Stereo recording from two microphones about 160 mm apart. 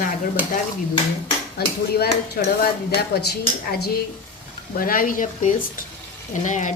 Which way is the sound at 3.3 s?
80° left.